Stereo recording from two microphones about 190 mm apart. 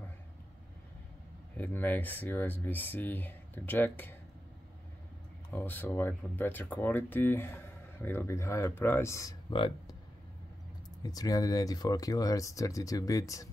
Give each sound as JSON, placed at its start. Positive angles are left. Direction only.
{"t": 1.6, "sound": "speech", "side_deg": 10}
{"t": 5.5, "sound": "speech", "side_deg": 10}
{"t": 11.0, "sound": "speech", "side_deg": 20}